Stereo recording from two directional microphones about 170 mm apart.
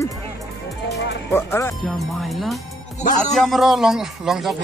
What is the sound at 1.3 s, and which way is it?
Speech, 15° left (ahead or behind).